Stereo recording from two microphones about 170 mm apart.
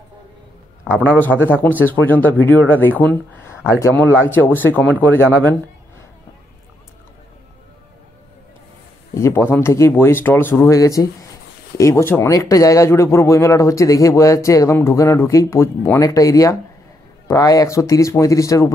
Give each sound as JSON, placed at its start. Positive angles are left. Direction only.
{"t": 0.8, "sound": "a man's voice", "side_deg": -5}
{"t": 1.9, "sound": "a man's voice", "side_deg": 10}
{"t": 9.1, "sound": "a man's voice", "side_deg": 15}